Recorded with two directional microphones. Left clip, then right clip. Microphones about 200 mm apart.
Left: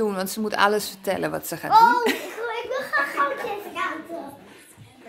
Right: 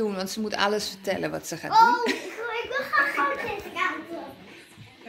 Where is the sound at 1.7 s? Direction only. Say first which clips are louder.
Left 3 dB; 50° left (ahead or behind).